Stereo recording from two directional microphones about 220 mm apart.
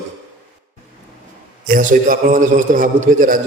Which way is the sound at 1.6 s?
40° right (ahead or behind).